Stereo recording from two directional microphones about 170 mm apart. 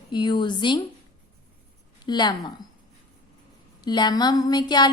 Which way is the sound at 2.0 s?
25° left (ahead or behind).